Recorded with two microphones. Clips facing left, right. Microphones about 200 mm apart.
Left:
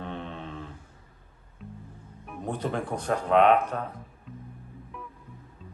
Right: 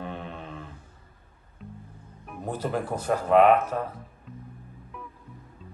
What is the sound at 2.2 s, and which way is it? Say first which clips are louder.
Speech: even; 5° right (ahead or behind).